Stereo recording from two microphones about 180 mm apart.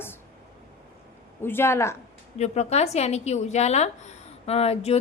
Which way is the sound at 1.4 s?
10° left (ahead or behind).